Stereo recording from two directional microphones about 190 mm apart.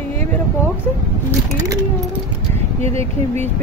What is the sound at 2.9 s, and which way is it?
Speech, 35° right (ahead or behind).